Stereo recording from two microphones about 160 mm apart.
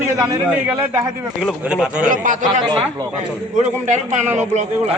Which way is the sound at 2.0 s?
55° right (ahead or behind).